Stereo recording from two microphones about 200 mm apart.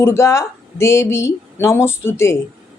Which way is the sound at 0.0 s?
15° left (ahead or behind).